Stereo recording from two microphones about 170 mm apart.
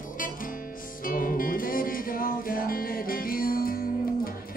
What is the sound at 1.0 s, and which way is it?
Music, 55° left (ahead or behind).